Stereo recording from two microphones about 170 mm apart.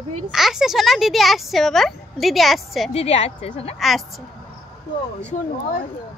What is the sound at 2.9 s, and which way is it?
Speech, 40° left (ahead or behind).